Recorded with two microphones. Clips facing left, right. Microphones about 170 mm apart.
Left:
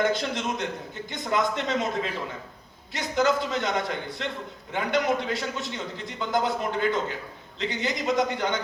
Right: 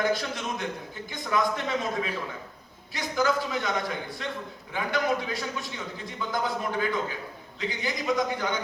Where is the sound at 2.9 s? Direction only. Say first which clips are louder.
Left 2 dB; 20° left (ahead or behind).